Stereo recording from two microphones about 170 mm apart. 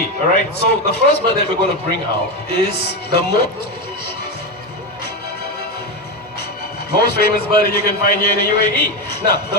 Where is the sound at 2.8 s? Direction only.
70° left (ahead or behind).